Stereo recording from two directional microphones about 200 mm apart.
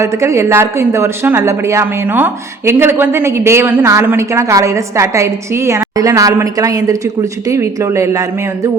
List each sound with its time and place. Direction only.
0.0 s speech: 15° right (ahead or behind)